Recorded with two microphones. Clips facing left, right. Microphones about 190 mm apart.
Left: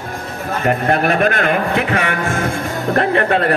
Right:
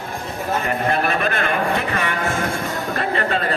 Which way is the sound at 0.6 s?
55° left (ahead or behind).